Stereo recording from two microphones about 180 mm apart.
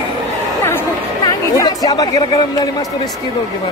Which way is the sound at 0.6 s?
20° left (ahead or behind).